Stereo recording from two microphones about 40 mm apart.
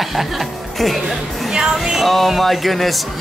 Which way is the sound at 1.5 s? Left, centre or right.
Centre.